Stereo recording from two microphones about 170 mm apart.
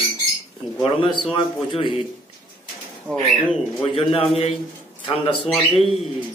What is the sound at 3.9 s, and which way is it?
A man's voice, 35° left (ahead or behind).